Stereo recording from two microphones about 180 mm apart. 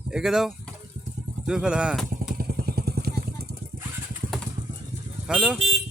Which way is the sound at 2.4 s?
60° right (ahead or behind).